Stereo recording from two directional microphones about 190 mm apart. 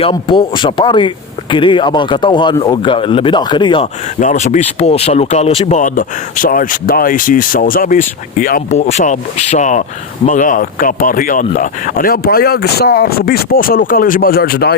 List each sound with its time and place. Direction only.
0.0 s speech: 25° left (ahead or behind)
4.2 s speech: 40° left (ahead or behind)